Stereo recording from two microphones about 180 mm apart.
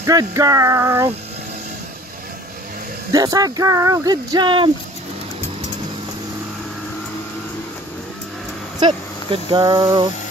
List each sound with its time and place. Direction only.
0.0 s a sound: 20° right (ahead or behind)
3.1 s speech: 20° right (ahead or behind)
8.7 s speech: 25° right (ahead or behind)